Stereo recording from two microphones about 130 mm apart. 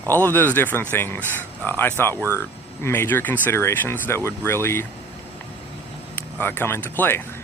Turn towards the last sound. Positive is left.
turn(degrees=15)  # may be behind; listen again after turning